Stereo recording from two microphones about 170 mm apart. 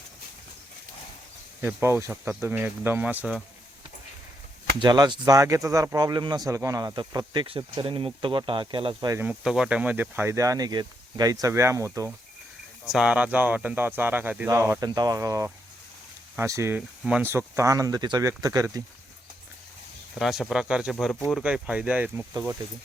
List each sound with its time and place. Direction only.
1.6 s speech: 15° right (ahead or behind)
4.8 s speech: 25° right (ahead or behind)
9.0 s speech: 15° right (ahead or behind)
9.3 s speech: 5° right (ahead or behind)
12.8 s speech: 5° right (ahead or behind); by 15.4 s 20° right (ahead or behind)
16.5 s speech: 15° right (ahead or behind)
17.0 s speech: 5° right (ahead or behind); by 18.8 s 20° right (ahead or behind)
20.1 s speech: centre (ahead or behind)